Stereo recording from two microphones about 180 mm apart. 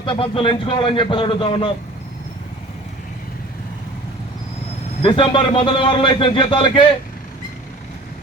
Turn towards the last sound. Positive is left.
turn(degrees=25)  # may be behind; listen again after turning